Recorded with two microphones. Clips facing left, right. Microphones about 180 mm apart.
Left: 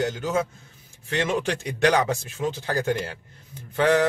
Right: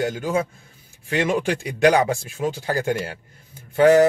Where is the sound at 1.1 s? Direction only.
10° right (ahead or behind).